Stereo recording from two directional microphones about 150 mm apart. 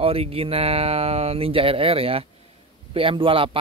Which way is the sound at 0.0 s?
40° right (ahead or behind).